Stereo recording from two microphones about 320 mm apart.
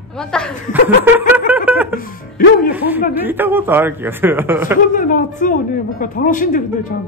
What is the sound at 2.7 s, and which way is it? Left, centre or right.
A man's voice, centre.